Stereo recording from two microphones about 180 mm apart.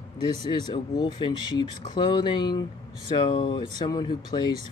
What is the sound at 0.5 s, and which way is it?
Speech, 25° left (ahead or behind).